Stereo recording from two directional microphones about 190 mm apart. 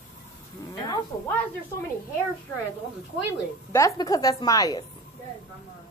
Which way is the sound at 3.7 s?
15° left (ahead or behind).